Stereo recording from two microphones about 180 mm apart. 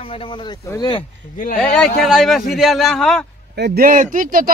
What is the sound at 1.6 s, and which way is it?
Speech, 5° left (ahead or behind).